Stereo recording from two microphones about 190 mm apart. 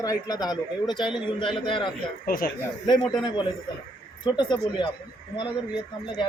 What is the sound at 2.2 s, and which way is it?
Speech, 50° left (ahead or behind).